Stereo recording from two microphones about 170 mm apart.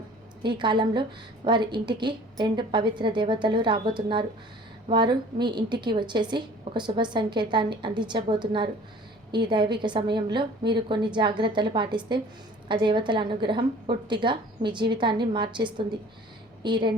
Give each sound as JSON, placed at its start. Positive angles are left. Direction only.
{"t": 0.4, "sound": "a woman's voice", "side_deg": -25}